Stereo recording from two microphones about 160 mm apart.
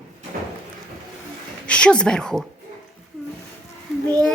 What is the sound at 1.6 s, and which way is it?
Speech, 5° left (ahead or behind).